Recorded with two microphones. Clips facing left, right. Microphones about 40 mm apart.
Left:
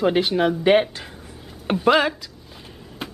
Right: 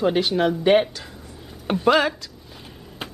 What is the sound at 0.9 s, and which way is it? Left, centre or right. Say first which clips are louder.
Speech: left 1 dB; left.